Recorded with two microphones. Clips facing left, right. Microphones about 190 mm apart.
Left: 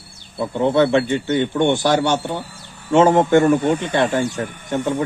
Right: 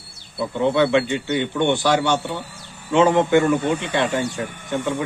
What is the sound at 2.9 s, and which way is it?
Speech, 45° left (ahead or behind).